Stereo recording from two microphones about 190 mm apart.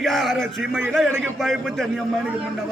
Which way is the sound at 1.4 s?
Centre (ahead or behind).